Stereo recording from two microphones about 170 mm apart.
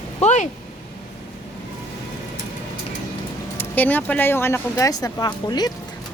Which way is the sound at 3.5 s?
10° left (ahead or behind).